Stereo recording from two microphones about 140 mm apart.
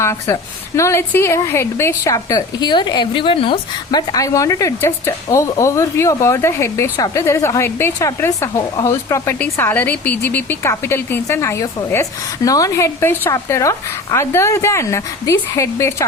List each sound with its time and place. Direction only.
0.0 s speech: 20° left (ahead or behind); by 4.0 s 40° left (ahead or behind)
4.1 s speech: 25° left (ahead or behind)